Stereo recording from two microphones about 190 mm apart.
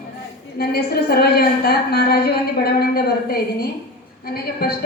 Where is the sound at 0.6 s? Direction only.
55° left (ahead or behind).